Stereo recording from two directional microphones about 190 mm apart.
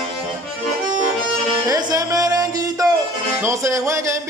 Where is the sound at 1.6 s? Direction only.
20° right (ahead or behind).